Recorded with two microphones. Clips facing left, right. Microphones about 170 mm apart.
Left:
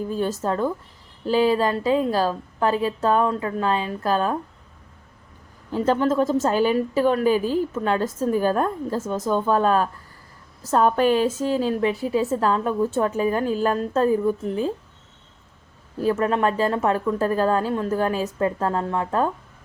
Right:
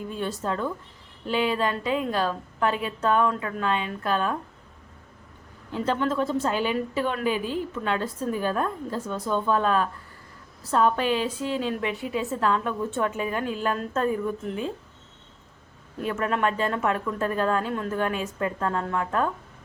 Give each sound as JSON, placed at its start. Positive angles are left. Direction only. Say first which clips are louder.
{"t": 0.0, "sound": "a woman's voice", "louder": "left 6 dB", "side_deg": 40}
{"t": 5.7, "sound": "a woman's voice", "louder": "left 5 dB", "side_deg": 40}
{"t": 16.0, "sound": "a woman's voice", "louder": "left 5 dB", "side_deg": 35}